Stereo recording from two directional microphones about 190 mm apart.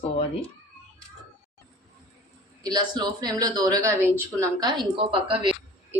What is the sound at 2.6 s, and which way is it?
Speech, 20° right (ahead or behind).